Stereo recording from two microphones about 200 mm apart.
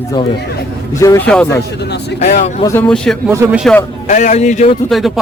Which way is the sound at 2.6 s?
10° left (ahead or behind).